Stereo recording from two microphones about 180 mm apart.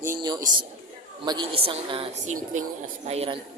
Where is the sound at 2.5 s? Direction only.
45° right (ahead or behind).